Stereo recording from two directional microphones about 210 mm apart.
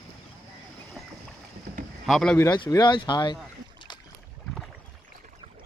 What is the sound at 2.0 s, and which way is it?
Speech, centre (ahead or behind).